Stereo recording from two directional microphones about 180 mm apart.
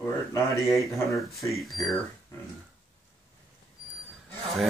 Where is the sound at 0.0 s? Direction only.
15° left (ahead or behind).